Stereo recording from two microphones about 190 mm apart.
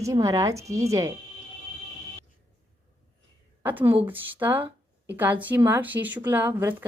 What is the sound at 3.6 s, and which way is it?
Speech, 10° right (ahead or behind).